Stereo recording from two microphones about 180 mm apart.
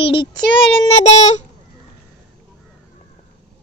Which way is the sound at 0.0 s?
30° left (ahead or behind).